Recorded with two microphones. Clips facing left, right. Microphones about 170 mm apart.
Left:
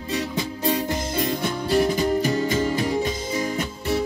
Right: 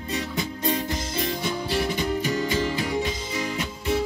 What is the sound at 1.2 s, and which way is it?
Music, 50° left (ahead or behind).